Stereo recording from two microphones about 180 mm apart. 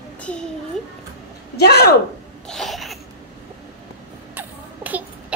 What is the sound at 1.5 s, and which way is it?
Speech, 65° left (ahead or behind).